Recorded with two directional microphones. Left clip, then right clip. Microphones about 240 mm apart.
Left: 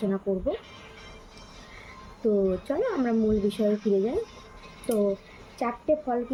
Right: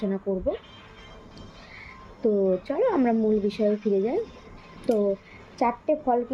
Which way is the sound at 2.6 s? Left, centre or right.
Centre.